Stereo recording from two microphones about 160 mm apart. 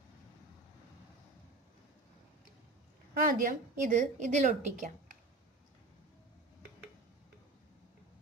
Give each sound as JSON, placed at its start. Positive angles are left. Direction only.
{"t": 3.2, "sound": "a woman's voice", "side_deg": -60}